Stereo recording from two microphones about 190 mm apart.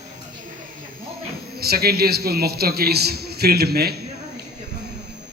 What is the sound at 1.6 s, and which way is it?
A man's voice, 55° right (ahead or behind).